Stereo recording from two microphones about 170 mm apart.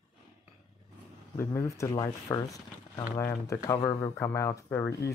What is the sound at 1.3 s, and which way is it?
Speech, 15° left (ahead or behind).